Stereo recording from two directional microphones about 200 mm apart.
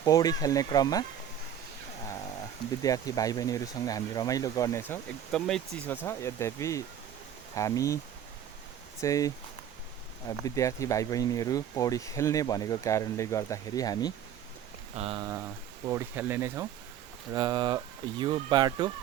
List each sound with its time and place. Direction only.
0.0 s speech: 20° left (ahead or behind)
2.8 s speech: 20° left (ahead or behind)
9.0 s speech: 15° left (ahead or behind)
10.4 s speech: 15° left (ahead or behind)
14.9 s speech: 30° right (ahead or behind)
15.2 s speech: 15° right (ahead or behind)
17.3 s speech: 20° right (ahead or behind)